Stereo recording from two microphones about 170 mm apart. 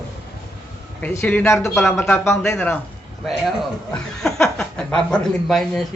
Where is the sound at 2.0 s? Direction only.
15° left (ahead or behind).